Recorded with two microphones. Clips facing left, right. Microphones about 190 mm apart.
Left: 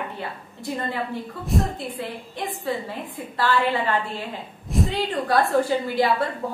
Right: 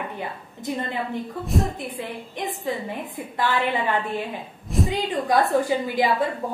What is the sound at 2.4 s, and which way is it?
A woman's voice, 20° right (ahead or behind).